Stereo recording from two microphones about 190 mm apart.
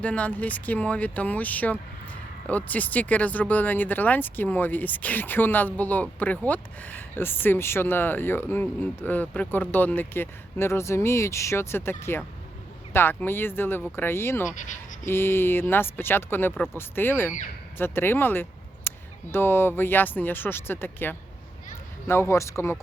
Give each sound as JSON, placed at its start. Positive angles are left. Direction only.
{"t": 0.0, "sound": "speech", "side_deg": 5}
{"t": 14.5, "sound": "speech", "side_deg": 40}
{"t": 15.0, "sound": "speech", "side_deg": 10}